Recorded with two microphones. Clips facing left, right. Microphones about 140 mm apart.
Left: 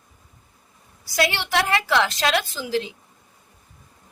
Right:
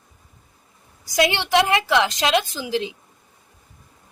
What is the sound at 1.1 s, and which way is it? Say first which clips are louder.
A woman's voice: right 4 dB; 20° right (ahead or behind).